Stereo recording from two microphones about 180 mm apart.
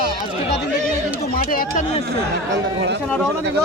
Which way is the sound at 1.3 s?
55° left (ahead or behind).